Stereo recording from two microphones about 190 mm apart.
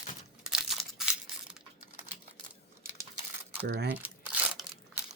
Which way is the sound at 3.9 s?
5° right (ahead or behind).